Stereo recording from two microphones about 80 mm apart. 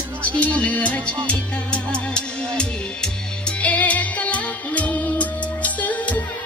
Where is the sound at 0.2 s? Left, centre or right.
Centre.